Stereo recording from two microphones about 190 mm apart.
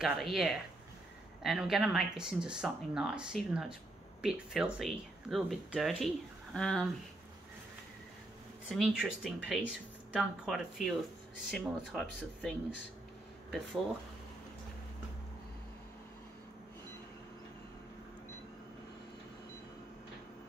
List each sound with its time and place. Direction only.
0.0 s speech: centre (ahead or behind)
8.6 s speech: centre (ahead or behind)